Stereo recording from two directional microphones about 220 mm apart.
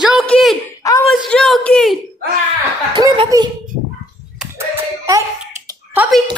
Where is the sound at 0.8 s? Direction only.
15° left (ahead or behind).